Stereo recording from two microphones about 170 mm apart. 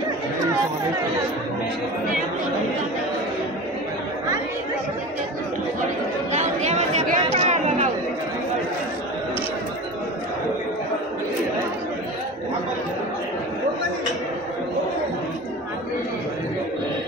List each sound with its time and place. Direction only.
6.3 s chatter: 45° right (ahead or behind)